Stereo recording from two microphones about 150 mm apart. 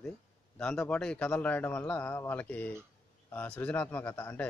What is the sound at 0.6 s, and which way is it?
Speech, 5° left (ahead or behind).